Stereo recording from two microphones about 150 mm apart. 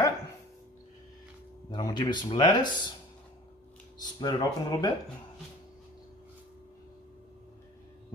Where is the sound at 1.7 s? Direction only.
30° left (ahead or behind).